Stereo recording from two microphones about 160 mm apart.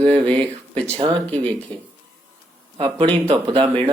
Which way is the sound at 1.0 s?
35° right (ahead or behind).